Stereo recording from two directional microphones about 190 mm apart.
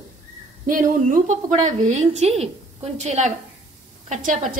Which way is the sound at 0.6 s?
45° right (ahead or behind).